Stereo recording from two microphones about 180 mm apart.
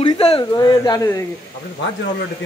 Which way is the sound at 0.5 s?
20° left (ahead or behind).